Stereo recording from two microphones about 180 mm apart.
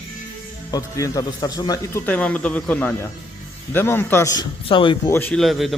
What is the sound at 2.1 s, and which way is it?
Speech, 5° left (ahead or behind).